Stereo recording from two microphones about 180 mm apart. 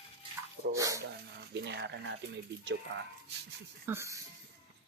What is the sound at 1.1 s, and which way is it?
Speech, 70° right (ahead or behind).